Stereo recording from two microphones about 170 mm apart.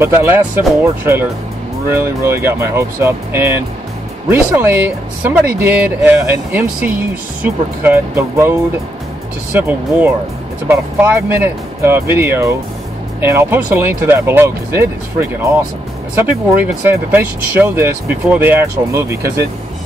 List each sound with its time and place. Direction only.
0.0 s speech: 15° right (ahead or behind)
16.9 s speech: 10° right (ahead or behind)